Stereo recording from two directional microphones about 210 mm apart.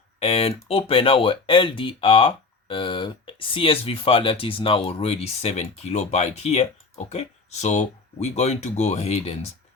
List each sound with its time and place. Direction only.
0.2 s speech: 30° left (ahead or behind)